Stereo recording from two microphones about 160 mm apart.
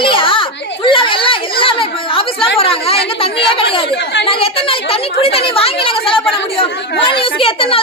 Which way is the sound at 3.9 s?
90° left.